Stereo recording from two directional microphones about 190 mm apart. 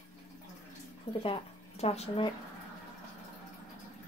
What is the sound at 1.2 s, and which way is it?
Speech, 30° left (ahead or behind).